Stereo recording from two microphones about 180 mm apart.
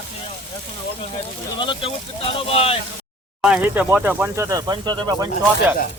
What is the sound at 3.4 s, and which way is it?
Speech, 5° right (ahead or behind).